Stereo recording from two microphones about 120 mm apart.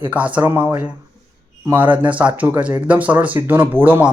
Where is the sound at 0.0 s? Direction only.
10° right (ahead or behind).